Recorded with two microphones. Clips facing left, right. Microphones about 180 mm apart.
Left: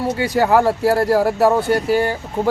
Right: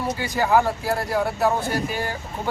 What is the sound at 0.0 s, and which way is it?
Speech, 70° left (ahead or behind).